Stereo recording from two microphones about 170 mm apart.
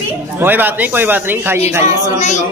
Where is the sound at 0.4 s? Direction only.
10° right (ahead or behind).